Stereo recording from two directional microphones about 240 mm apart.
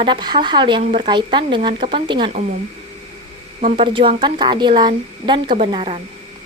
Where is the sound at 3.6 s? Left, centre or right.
Right.